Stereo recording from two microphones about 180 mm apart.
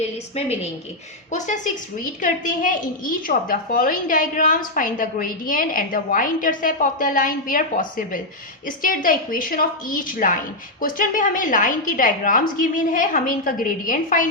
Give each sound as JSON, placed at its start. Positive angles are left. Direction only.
{"t": 0.0, "sound": "a woman's voice", "side_deg": 35}